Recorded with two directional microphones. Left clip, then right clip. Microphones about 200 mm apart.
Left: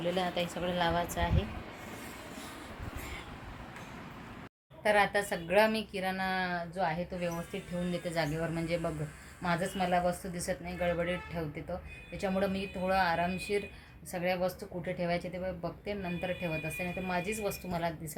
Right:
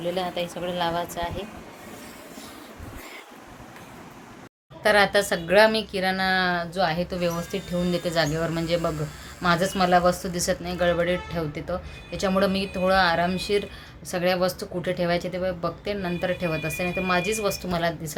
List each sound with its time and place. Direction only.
0.0 s speech: centre (ahead or behind)
4.8 s a woman's voice: 10° right (ahead or behind)